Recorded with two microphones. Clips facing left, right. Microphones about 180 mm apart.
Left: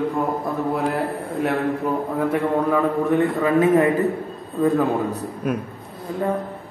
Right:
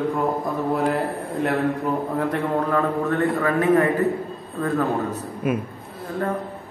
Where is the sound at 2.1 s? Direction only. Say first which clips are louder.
Left 2 dB; 5° left (ahead or behind); by 3.9 s 20° left (ahead or behind).